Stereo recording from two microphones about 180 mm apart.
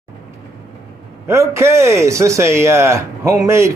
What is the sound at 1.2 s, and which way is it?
A man's voice, 15° right (ahead or behind).